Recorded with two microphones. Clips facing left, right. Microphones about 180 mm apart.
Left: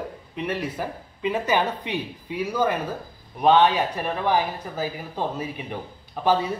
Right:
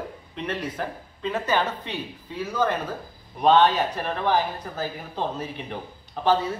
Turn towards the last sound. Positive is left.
turn(degrees=10)  # may be behind; listen again after turning